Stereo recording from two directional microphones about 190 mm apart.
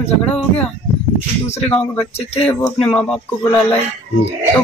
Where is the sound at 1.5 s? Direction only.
35° left (ahead or behind).